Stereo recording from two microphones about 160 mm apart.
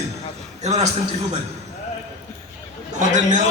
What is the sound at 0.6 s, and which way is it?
Speech, 45° right (ahead or behind).